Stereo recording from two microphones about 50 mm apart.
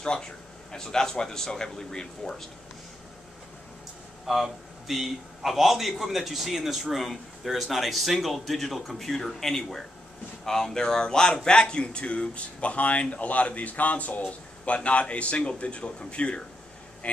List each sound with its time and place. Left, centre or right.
0.0 s a man's voice: centre
4.3 s a man's voice: centre; by 17.2 s left